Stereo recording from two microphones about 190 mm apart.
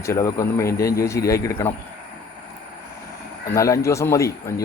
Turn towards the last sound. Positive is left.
turn(degrees=15)  # may be behind; listen again after turning